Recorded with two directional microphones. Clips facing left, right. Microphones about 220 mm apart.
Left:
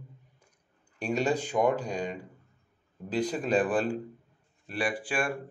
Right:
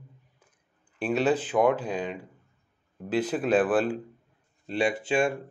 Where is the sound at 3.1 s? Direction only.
5° right (ahead or behind).